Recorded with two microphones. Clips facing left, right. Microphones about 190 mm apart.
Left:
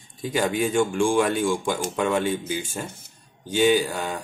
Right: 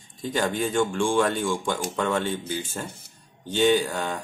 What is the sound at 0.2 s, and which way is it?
Speech, 10° left (ahead or behind).